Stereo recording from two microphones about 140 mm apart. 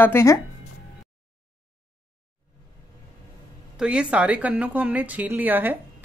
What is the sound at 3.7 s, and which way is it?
A woman's voice, 10° right (ahead or behind).